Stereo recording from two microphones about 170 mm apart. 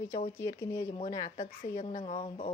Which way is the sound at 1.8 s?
40° left (ahead or behind).